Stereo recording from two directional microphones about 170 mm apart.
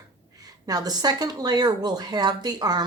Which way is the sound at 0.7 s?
20° right (ahead or behind).